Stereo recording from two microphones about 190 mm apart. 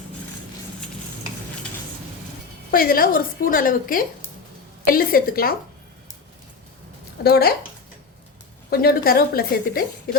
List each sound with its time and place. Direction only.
2.7 s a woman's voice: 50° left (ahead or behind)
7.3 s speech: 55° left (ahead or behind)
8.7 s a woman's voice: 55° left (ahead or behind)